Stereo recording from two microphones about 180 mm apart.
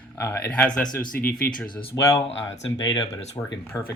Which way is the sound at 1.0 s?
50° left (ahead or behind).